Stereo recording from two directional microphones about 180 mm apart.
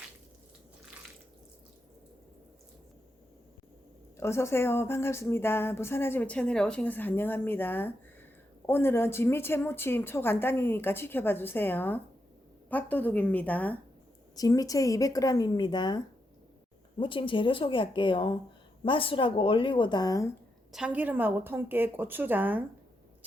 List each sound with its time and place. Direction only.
4.2 s speech: 15° left (ahead or behind)
14.3 s speech: 20° left (ahead or behind)
17.0 s speech: 30° left (ahead or behind)
20.7 s a woman's voice: 5° right (ahead or behind)